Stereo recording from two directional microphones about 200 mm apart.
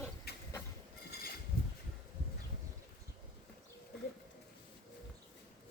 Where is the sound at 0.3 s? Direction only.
50° left (ahead or behind).